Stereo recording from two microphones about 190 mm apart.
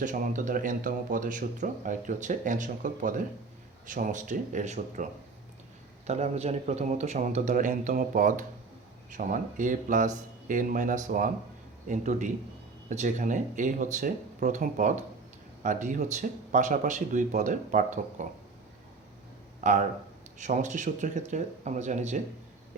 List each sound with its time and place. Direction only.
0.0 s speech: 40° right (ahead or behind)
6.1 s speech: 35° right (ahead or behind)
19.6 s speech: 40° right (ahead or behind)